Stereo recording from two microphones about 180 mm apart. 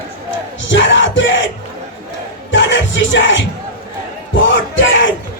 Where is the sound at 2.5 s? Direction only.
90° left.